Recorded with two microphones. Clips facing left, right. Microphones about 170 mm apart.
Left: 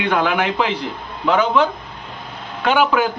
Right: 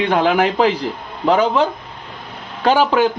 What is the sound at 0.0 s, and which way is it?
Speech, 30° right (ahead or behind).